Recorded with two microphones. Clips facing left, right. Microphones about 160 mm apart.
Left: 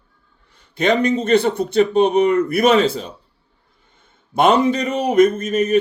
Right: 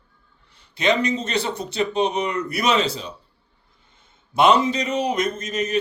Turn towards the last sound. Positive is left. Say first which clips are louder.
# left 7 dB
turn(degrees=55)  # may be behind; listen again after turning